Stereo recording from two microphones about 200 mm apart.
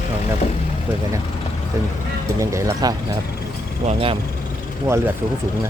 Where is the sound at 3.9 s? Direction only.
30° right (ahead or behind).